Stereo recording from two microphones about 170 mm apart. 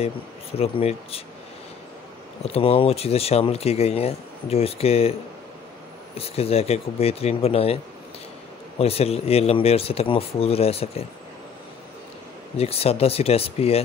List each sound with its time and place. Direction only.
0.0 s speech: 35° left (ahead or behind)
2.4 s speech: 35° left (ahead or behind)
6.1 s speech: 35° left (ahead or behind)
12.5 s speech: 35° left (ahead or behind)